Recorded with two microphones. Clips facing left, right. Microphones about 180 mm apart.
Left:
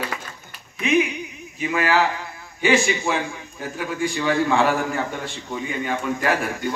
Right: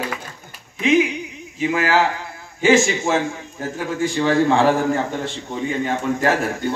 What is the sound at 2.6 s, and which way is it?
Speech, 45° right (ahead or behind).